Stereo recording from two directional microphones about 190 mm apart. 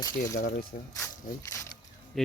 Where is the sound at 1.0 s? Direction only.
15° left (ahead or behind).